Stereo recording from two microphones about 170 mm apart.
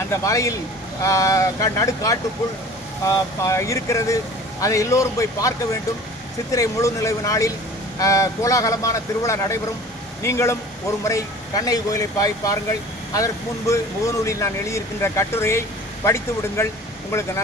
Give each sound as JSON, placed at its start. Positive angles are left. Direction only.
{"t": 0.1, "sound": "speech", "side_deg": 20}
{"t": 3.4, "sound": "speech", "side_deg": 15}